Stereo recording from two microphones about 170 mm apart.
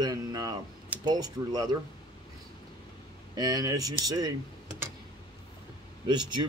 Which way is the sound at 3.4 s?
25° right (ahead or behind).